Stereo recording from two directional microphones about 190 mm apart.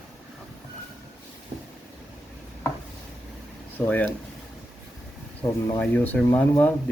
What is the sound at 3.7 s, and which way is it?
Speech, 10° left (ahead or behind).